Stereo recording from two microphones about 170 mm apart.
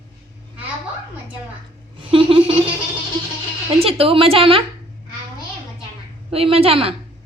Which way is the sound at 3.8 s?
35° right (ahead or behind).